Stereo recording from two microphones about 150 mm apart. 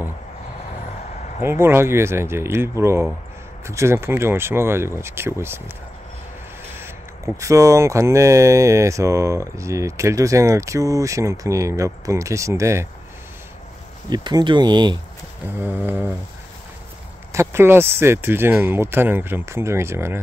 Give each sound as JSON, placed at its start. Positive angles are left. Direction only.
{"t": 1.4, "sound": "speech", "side_deg": -15}
{"t": 6.8, "sound": "speech", "side_deg": -20}
{"t": 14.1, "sound": "speech", "side_deg": -30}
{"t": 15.6, "sound": "speech", "side_deg": -15}
{"t": 17.3, "sound": "speech", "side_deg": -15}